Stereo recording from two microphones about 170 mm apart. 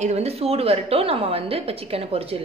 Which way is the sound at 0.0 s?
40° right (ahead or behind).